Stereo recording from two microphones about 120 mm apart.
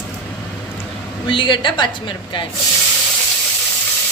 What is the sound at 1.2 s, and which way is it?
A woman's voice, 45° left (ahead or behind).